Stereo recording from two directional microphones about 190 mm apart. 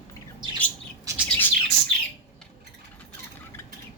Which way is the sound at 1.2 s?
10° left (ahead or behind).